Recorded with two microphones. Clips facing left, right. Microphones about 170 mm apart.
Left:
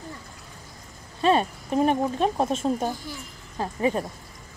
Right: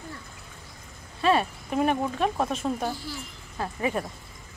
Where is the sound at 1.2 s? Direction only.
30° left (ahead or behind).